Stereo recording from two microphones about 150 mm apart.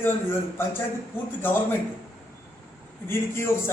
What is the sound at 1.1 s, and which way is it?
Speech, 15° left (ahead or behind).